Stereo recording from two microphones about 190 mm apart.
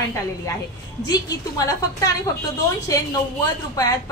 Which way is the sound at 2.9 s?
15° left (ahead or behind).